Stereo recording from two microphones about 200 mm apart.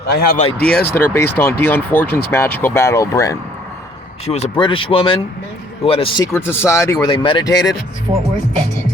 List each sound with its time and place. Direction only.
0.1 s speech: 50° left (ahead or behind)
0.6 s speech: 10° left (ahead or behind)
4.3 s speech: 30° left (ahead or behind)
6.3 s speech: 10° left (ahead or behind)